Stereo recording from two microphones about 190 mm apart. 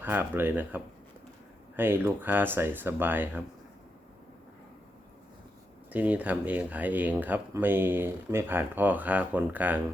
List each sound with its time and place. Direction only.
0.0 s speech: 10° right (ahead or behind)
5.9 s speech: 10° right (ahead or behind)